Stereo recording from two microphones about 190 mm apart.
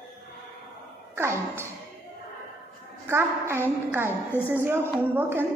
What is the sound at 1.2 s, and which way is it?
Speech, 15° right (ahead or behind).